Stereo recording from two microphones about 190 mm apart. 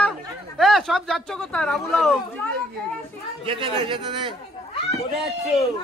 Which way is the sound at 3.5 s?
25° right (ahead or behind).